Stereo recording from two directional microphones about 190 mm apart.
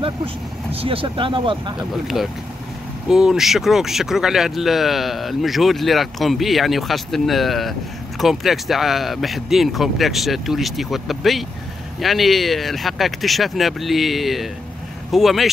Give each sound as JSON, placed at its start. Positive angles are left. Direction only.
{"t": 0.0, "sound": "speech", "side_deg": -30}
{"t": 1.8, "sound": "speech", "side_deg": 0}